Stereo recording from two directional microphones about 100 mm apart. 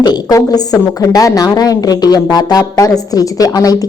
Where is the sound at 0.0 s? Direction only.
45° left (ahead or behind).